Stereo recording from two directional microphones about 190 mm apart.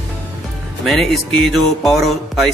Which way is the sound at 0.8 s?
Centre (ahead or behind).